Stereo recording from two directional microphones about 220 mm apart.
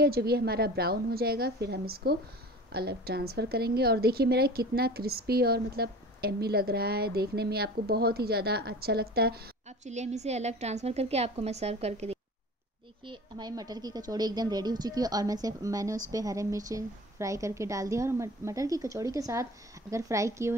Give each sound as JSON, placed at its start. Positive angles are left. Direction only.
{"t": 0.0, "sound": "a woman's voice", "side_deg": -45}
{"t": 9.7, "sound": "a woman's voice", "side_deg": -30}